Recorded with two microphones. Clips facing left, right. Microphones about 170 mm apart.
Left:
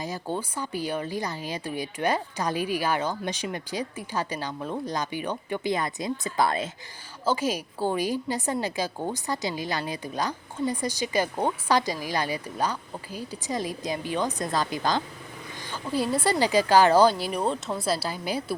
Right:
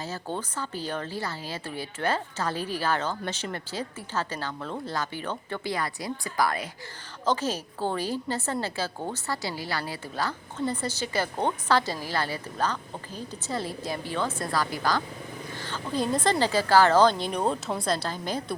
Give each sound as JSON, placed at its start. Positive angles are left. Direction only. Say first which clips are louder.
{"t": 0.0, "sound": "speech", "louder": "left 2 dB", "side_deg": 15}
{"t": 7.3, "sound": "speech", "louder": "left 1 dB", "side_deg": 10}